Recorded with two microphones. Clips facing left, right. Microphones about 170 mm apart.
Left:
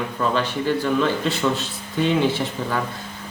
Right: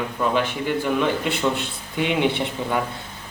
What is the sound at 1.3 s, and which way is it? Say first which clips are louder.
Speech: left 1 dB; 55° right (ahead or behind).